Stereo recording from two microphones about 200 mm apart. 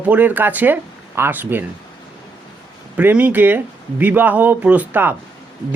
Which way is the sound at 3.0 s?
10° right (ahead or behind).